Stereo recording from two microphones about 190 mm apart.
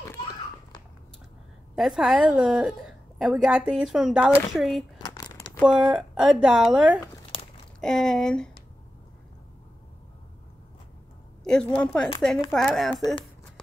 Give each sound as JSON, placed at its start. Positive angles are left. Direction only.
{"t": 0.1, "sound": "a sound", "side_deg": 20}
{"t": 1.8, "sound": "speech", "side_deg": -5}
{"t": 4.9, "sound": "crumpling", "side_deg": 20}
{"t": 5.7, "sound": "speech", "side_deg": -5}
{"t": 11.4, "sound": "speech", "side_deg": 5}